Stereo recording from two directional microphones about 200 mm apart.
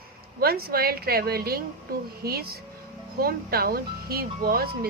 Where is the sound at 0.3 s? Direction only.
50° right (ahead or behind).